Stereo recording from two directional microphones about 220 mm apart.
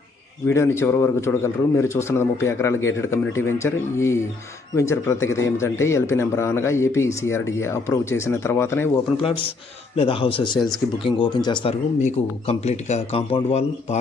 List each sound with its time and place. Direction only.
0.5 s a man's voice: 10° left (ahead or behind)
9.1 s a man's voice: 25° left (ahead or behind)